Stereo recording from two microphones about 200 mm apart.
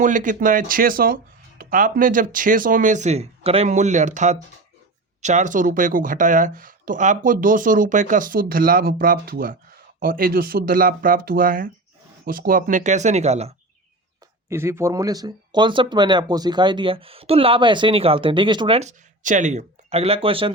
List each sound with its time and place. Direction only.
0.0 s speech: 40° right (ahead or behind)
14.5 s speech: 10° right (ahead or behind)